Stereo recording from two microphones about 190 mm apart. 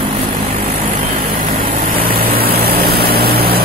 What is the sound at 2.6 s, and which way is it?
Vehicle, 55° right (ahead or behind).